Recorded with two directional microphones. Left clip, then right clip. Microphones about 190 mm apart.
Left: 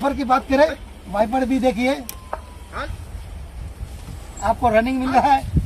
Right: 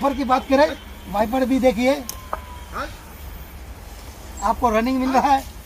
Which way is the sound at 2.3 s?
45° right (ahead or behind).